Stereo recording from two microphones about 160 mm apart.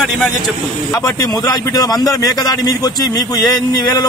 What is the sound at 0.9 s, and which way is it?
A man's voice, 25° left (ahead or behind).